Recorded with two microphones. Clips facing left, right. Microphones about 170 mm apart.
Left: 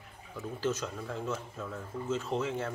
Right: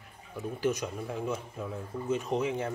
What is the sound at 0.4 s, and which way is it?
Speech, 15° right (ahead or behind).